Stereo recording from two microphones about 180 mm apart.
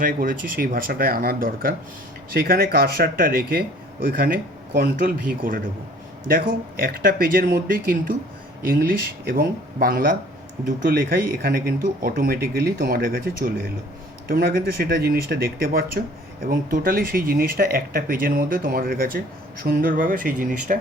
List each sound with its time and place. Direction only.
0.0 s speech: 50° right (ahead or behind)
6.2 s speech: 55° right (ahead or behind)